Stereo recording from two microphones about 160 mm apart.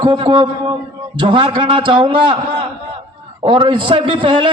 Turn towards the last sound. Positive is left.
turn(degrees=-30)  # may be behind; listen again after turning